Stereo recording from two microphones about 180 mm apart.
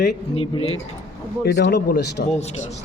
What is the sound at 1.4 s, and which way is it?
Speech, 70° left (ahead or behind).